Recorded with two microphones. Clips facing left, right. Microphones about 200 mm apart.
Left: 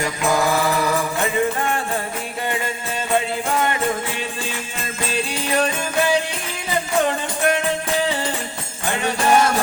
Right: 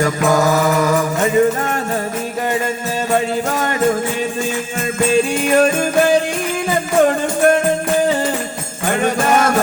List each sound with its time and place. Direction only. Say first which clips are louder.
0.0 s music: right 5 dB; 45° right (ahead or behind)
3.5 s music: right 3 dB; 45° right (ahead or behind)
5.1 s music: right 8 dB; 50° right (ahead or behind)